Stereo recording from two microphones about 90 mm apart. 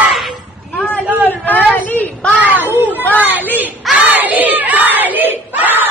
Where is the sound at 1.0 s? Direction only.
20° right (ahead or behind).